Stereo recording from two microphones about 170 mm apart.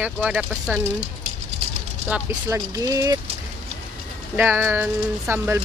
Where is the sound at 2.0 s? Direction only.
5° right (ahead or behind).